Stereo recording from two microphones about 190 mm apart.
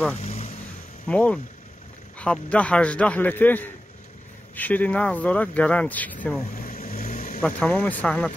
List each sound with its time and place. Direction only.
0.2 s vehicle: 30° left (ahead or behind)
1.0 s speech: 5° left (ahead or behind)
6.6 s vehicle: 50° left (ahead or behind)
7.4 s speech: 5° left (ahead or behind)